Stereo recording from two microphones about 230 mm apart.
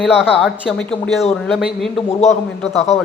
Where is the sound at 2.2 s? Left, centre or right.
Left.